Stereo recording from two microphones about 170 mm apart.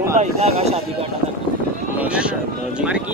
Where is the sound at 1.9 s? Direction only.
10° right (ahead or behind).